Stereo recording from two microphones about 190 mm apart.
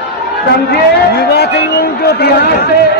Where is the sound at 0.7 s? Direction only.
60° left (ahead or behind).